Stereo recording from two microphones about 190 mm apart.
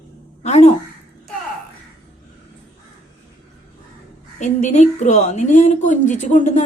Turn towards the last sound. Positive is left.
turn(degrees=40)  # may be behind; listen again after turning